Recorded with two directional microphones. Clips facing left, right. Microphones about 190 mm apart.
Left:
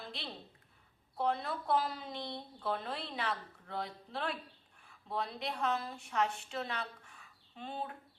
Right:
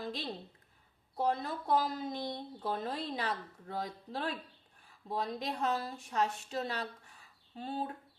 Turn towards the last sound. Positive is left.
turn(degrees=-35)  # may be behind; listen again after turning